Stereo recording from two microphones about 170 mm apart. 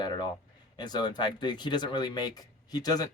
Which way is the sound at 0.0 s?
25° left (ahead or behind).